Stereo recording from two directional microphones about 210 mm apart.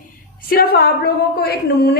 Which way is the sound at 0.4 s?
45° left (ahead or behind).